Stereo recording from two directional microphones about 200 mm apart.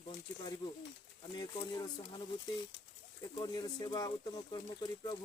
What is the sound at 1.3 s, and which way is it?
Speech, 25° left (ahead or behind).